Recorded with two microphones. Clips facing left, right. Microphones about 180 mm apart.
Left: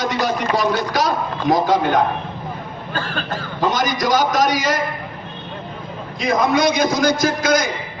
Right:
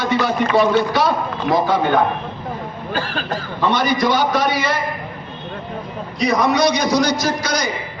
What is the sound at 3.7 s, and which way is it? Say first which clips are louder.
Speech: right 3 dB; 45° left (ahead or behind).